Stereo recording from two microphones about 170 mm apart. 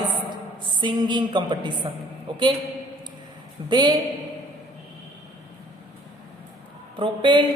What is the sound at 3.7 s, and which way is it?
Speech, 25° right (ahead or behind).